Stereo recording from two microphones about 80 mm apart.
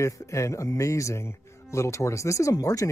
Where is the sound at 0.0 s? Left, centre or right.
Left.